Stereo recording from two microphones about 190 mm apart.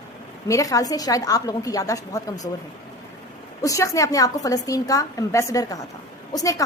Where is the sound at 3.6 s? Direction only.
15° left (ahead or behind).